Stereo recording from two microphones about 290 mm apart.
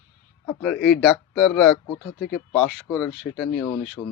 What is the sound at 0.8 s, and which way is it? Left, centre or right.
Speech, centre.